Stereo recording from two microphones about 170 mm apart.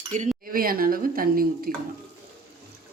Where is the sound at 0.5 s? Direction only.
60° right (ahead or behind).